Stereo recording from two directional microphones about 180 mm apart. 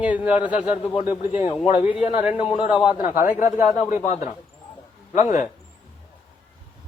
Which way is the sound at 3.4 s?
15° right (ahead or behind).